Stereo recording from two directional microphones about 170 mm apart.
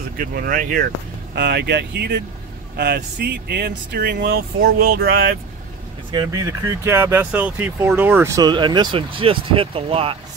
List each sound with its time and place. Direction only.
0.2 s speech: 55° right (ahead or behind)
1.3 s speech: 75° right (ahead or behind)
6.1 s speech: 20° right (ahead or behind)